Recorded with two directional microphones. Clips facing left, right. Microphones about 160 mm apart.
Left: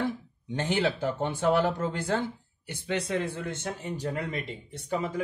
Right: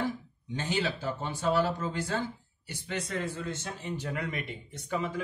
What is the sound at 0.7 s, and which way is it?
Speech, 55° left (ahead or behind).